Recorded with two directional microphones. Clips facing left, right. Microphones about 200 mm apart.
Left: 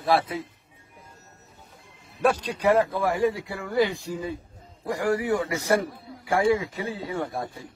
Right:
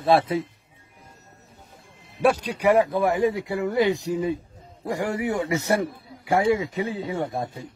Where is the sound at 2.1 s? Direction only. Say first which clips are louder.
Right 2 dB; 10° right (ahead or behind).